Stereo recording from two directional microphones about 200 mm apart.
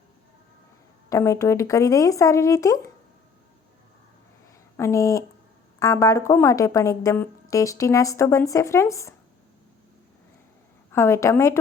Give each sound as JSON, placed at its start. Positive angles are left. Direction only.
{"t": 1.1, "sound": "a woman's voice", "side_deg": 15}
{"t": 4.8, "sound": "a woman's voice", "side_deg": 15}
{"t": 10.9, "sound": "a woman's voice", "side_deg": 15}